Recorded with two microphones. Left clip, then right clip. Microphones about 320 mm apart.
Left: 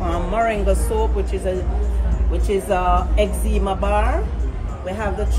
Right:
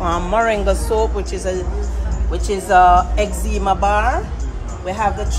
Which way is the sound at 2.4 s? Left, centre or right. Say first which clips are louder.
Right 8 dB; centre.